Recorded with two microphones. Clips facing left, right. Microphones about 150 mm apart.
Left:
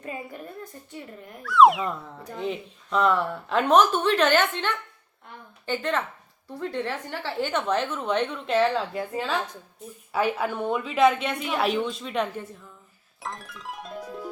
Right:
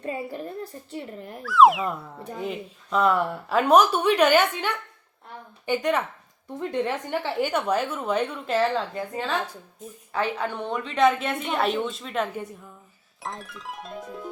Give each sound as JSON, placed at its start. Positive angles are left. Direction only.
{"t": 0.0, "sound": "speech", "side_deg": -35}
{"t": 1.4, "sound": "a woman's voice", "side_deg": 0}